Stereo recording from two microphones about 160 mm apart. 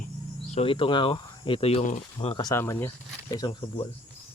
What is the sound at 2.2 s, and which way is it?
Speech, 25° left (ahead or behind).